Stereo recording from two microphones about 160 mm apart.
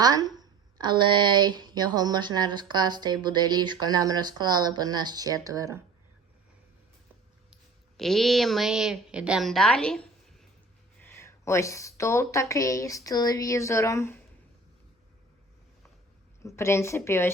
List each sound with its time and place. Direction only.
0.0 s a woman's voice: 25° right (ahead or behind)
7.5 s a woman's voice: centre (ahead or behind)
11.0 s a woman's voice: 15° left (ahead or behind)
16.4 s a woman's voice: 15° left (ahead or behind)